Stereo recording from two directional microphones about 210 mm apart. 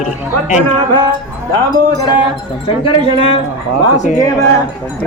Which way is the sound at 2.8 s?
25° left (ahead or behind).